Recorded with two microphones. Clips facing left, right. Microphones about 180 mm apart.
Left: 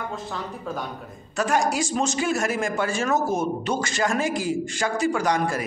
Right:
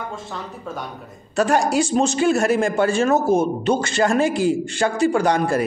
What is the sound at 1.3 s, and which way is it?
A man's voice, 30° right (ahead or behind).